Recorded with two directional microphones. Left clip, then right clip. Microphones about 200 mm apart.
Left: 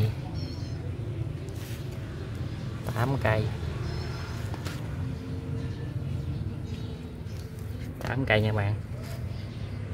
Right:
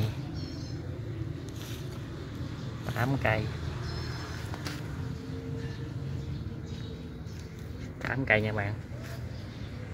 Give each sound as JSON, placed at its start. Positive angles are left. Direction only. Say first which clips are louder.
{"t": 2.9, "sound": "a man's voice", "louder": "left 1 dB", "side_deg": 0}
{"t": 8.1, "sound": "speech", "louder": "left 1 dB", "side_deg": 5}